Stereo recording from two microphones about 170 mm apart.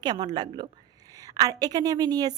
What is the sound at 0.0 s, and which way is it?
A woman's voice, 25° right (ahead or behind).